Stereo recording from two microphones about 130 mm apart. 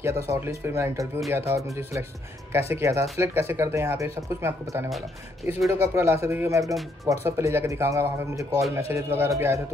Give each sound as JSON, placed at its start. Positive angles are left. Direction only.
{"t": 0.0, "sound": "speech", "side_deg": -20}